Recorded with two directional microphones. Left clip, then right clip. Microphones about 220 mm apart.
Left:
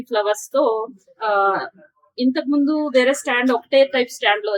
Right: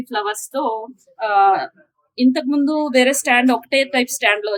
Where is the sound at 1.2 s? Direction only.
40° right (ahead or behind).